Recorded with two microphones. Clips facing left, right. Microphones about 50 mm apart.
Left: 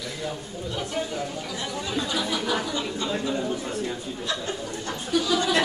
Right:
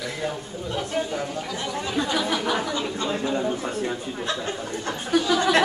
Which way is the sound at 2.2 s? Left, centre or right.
Right.